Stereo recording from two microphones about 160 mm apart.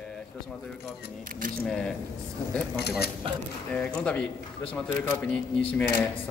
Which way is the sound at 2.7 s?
85° left.